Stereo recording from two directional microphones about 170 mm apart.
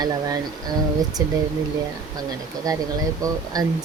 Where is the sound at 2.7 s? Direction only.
20° right (ahead or behind).